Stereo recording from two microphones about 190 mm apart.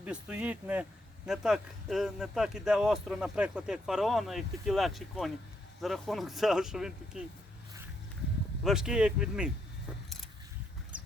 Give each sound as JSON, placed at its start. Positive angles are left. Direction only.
{"t": 0.0, "sound": "speech", "side_deg": -5}
{"t": 8.6, "sound": "speech", "side_deg": -5}